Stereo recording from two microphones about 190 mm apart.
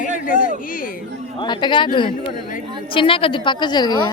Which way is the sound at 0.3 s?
45° left (ahead or behind).